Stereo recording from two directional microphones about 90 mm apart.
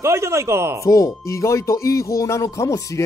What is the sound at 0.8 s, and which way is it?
Speech, 35° left (ahead or behind).